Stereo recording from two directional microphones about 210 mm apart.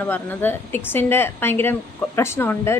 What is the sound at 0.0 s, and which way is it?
A woman's voice, 10° left (ahead or behind).